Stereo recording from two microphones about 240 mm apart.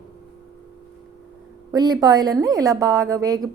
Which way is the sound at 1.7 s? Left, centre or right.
Centre.